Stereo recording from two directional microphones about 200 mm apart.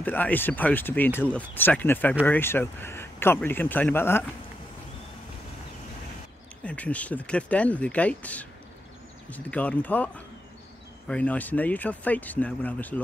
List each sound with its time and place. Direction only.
0.0 s speech: 10° left (ahead or behind)
6.6 s speech: 5° left (ahead or behind)